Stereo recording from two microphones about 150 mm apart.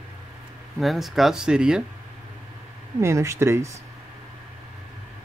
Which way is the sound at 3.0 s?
20° right (ahead or behind).